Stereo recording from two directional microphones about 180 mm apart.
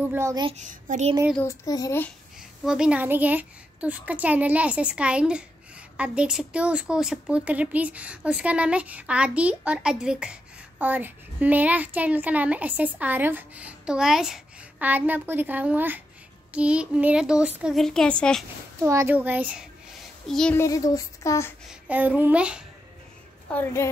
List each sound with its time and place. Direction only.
0.0 s speech: 15° right (ahead or behind)
0.5 s a child's voice: 45° right (ahead or behind)
1.4 s speech: 15° left (ahead or behind)
2.6 s a woman's voice: 5° right (ahead or behind)
18.8 s a child's voice: 15° right (ahead or behind); by 20.6 s 5° left (ahead or behind)
20.6 s speech: 20° left (ahead or behind)
21.6 s speech: 10° right (ahead or behind)
23.5 s speech: 15° left (ahead or behind)